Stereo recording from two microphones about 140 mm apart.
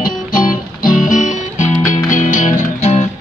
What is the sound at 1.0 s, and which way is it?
Music, 60° left (ahead or behind).